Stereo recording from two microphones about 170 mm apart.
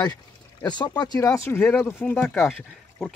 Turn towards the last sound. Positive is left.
turn(degrees=0)  # may be behind; listen again after turning